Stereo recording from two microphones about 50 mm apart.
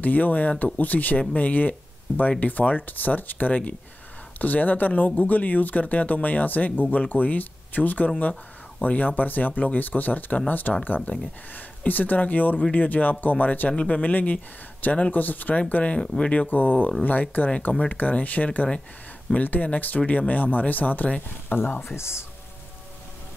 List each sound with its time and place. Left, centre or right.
0.0 s speech: left
16.4 s speech: left